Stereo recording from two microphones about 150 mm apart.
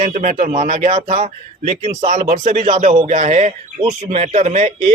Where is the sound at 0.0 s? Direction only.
50° right (ahead or behind).